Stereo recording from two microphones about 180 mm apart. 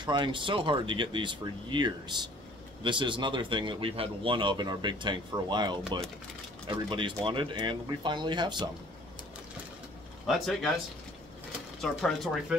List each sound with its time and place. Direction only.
0.0 s speech: 25° right (ahead or behind)
10.2 s speech: centre (ahead or behind)
11.8 s speech: centre (ahead or behind)